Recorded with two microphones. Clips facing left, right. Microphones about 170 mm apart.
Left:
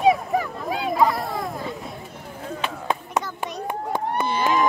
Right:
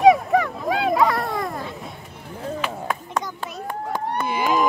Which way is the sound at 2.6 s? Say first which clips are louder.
Even; 25° left (ahead or behind).